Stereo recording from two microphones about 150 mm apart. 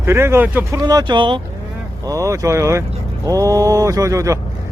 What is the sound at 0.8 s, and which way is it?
Speech, 25° right (ahead or behind).